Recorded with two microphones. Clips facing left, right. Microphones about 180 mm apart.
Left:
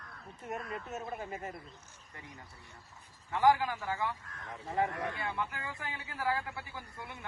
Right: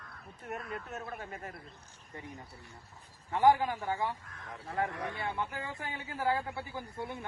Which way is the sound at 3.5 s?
20° right (ahead or behind).